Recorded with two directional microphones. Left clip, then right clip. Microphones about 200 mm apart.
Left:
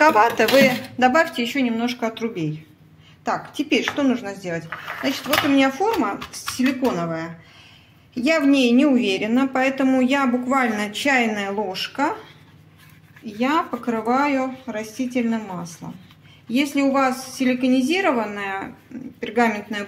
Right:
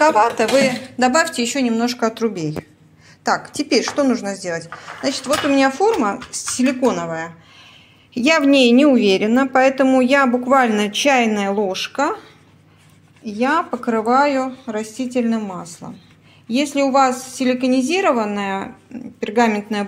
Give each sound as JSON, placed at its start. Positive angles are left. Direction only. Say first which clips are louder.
{"t": 0.0, "sound": "speech", "louder": "right 1 dB", "side_deg": 0}
{"t": 0.9, "sound": "a woman's voice", "louder": "right 3 dB", "side_deg": -20}
{"t": 13.2, "sound": "a woman's voice", "louder": "right 3 dB", "side_deg": -35}